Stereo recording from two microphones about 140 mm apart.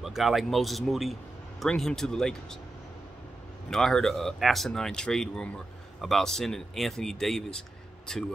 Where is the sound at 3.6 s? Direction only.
5° left (ahead or behind).